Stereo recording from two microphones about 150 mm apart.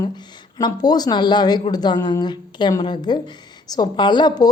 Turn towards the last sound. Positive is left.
turn(degrees=30)  # may be behind; listen again after turning